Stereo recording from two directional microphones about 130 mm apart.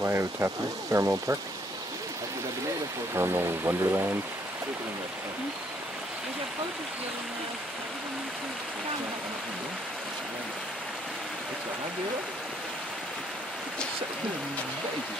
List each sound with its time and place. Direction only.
0.0 s speech: 20° right (ahead or behind)
3.2 s speech: 20° right (ahead or behind)